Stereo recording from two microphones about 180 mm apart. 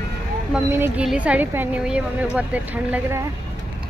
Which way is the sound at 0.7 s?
10° right (ahead or behind).